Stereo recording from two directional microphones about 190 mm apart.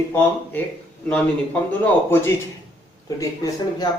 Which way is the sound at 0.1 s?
10° left (ahead or behind).